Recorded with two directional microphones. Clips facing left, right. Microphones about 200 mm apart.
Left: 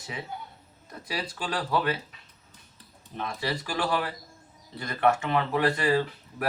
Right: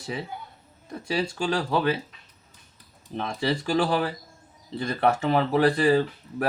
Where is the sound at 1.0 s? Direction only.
25° right (ahead or behind).